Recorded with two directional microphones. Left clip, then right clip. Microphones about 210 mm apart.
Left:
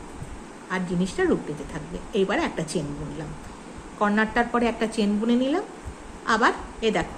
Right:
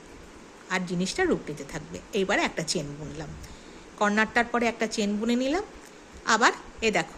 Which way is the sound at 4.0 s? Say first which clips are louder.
Left 1 dB; 30° right (ahead or behind).